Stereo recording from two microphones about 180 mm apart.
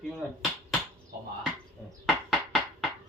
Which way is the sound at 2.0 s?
Centre (ahead or behind).